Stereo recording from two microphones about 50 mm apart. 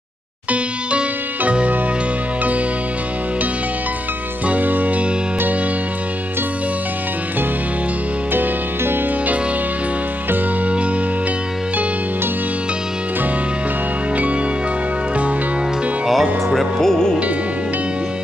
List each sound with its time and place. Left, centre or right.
0.5 s music: right
4.5 s music: right
8.3 s music: right
16.1 s music: centre